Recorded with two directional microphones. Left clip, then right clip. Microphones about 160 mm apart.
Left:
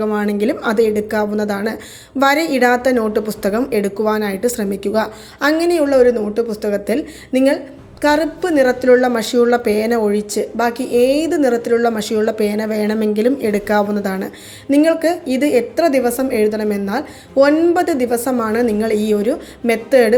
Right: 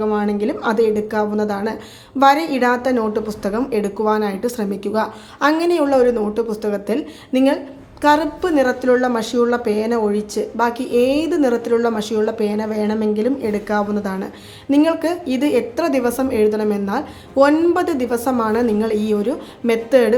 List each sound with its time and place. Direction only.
0.0 s a woman's voice: 15° left (ahead or behind)
17.3 s a woman's voice: centre (ahead or behind)